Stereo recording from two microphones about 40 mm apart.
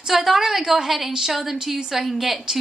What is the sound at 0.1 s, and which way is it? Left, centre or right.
A woman's voice, centre.